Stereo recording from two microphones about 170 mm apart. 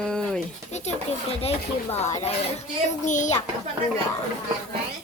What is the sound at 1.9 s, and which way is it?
A child's voice, 40° left (ahead or behind).